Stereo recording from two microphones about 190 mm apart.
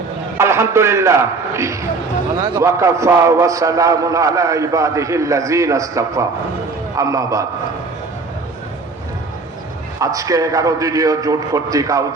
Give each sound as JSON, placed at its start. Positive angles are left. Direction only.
{"t": 0.3, "sound": "a man's voice", "side_deg": -15}
{"t": 10.0, "sound": "a man's voice", "side_deg": -15}